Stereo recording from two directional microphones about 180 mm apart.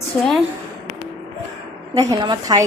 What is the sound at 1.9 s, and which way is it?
Speech, 20° right (ahead or behind).